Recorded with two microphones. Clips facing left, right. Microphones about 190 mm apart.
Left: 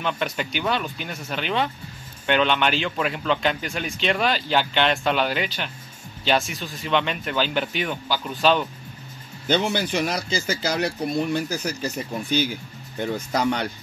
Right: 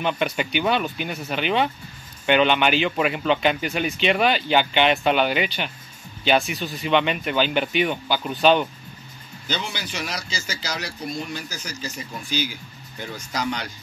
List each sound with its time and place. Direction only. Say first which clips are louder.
0.0 s a man's voice: right 3 dB; 5° right (ahead or behind)
9.5 s speech: left 8 dB; 55° left (ahead or behind)